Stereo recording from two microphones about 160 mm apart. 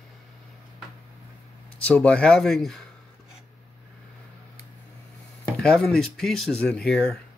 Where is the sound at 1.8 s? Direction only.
10° left (ahead or behind).